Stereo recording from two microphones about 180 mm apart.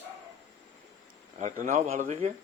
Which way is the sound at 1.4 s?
40° right (ahead or behind).